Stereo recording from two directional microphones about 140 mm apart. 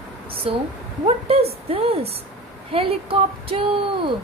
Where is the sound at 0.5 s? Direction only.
40° right (ahead or behind).